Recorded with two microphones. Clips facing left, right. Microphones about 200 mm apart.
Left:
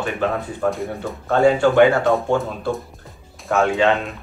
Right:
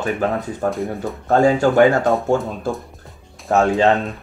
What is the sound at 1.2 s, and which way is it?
Speech, 40° right (ahead or behind).